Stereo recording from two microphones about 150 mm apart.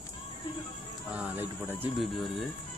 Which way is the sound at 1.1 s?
10° right (ahead or behind).